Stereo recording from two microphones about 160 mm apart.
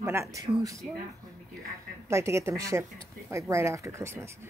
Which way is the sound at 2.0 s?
15° right (ahead or behind).